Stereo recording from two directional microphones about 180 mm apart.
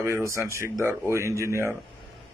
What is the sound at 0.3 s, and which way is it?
A man's voice, 15° right (ahead or behind).